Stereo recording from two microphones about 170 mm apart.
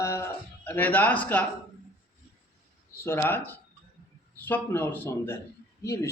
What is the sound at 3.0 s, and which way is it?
Speech, 15° left (ahead or behind).